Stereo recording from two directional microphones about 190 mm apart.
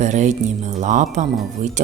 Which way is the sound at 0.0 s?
40° right (ahead or behind).